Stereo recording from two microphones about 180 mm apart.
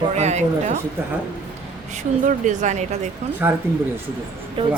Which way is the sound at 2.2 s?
45° right (ahead or behind).